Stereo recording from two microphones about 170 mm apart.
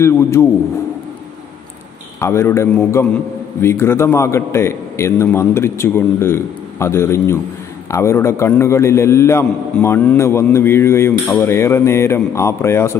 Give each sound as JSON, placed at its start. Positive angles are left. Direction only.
{"t": 0.0, "sound": "a man's voice", "side_deg": 15}
{"t": 2.1, "sound": "a man's voice", "side_deg": 15}